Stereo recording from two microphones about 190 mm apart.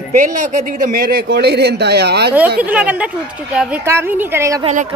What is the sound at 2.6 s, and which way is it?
A woman's voice, 10° right (ahead or behind).